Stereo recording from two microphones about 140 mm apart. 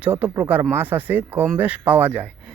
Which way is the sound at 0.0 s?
10° right (ahead or behind).